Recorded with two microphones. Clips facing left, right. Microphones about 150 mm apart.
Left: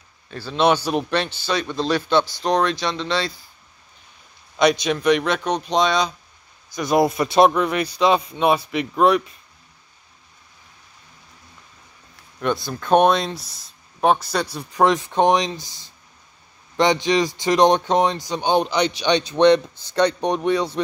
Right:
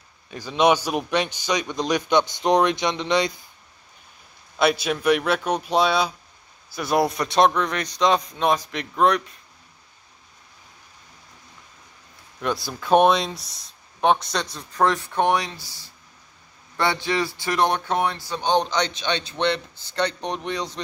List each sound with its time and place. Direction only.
0.3 s speech: 10° right (ahead or behind)
4.6 s speech: 5° right (ahead or behind)
12.4 s speech: centre (ahead or behind)